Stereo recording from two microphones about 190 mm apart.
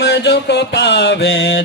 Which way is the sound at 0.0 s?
60° left (ahead or behind).